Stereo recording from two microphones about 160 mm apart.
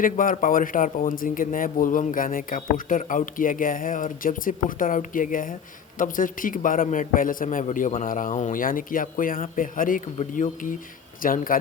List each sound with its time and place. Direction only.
0.0 s a man's voice: 60° left (ahead or behind)